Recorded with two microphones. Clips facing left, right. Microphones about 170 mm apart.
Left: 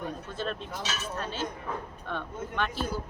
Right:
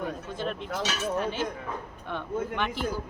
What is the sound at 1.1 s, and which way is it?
Speech, 15° right (ahead or behind).